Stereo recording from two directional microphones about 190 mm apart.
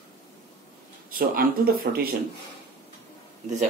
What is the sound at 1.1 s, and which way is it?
Speech, 50° right (ahead or behind).